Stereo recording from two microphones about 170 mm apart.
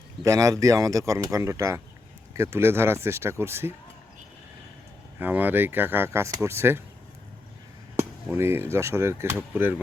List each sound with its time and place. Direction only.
0.2 s speech: 20° right (ahead or behind)
5.2 s speech: 10° right (ahead or behind)
7.9 s speech: 15° right (ahead or behind)